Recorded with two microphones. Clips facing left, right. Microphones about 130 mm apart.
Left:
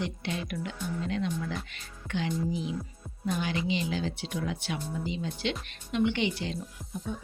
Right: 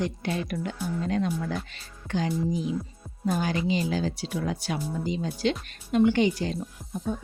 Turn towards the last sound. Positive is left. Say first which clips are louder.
# right 4 dB
turn(degrees=-45)  # may be behind; listen again after turning